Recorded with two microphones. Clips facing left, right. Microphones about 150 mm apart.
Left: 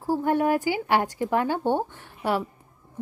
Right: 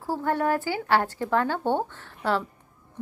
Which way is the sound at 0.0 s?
15° left (ahead or behind).